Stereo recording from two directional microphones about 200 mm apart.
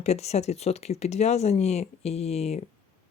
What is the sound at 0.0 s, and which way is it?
Speech, 35° left (ahead or behind).